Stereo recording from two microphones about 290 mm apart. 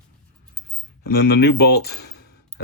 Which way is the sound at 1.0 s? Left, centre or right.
Left.